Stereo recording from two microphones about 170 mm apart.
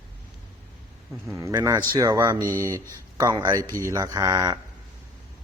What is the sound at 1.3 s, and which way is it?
Speech, 20° right (ahead or behind).